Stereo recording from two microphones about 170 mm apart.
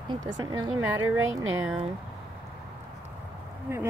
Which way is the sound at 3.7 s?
15° right (ahead or behind).